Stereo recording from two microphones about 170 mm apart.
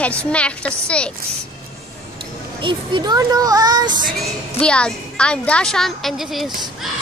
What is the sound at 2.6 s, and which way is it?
Speech, 25° right (ahead or behind).